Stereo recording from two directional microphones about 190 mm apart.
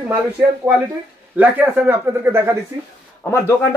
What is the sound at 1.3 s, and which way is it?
A man's voice, 10° right (ahead or behind).